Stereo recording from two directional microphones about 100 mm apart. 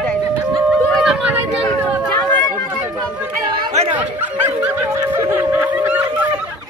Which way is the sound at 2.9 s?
40° right (ahead or behind).